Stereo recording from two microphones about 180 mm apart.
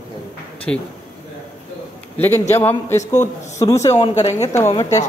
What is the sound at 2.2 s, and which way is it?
A man's voice, 15° left (ahead or behind).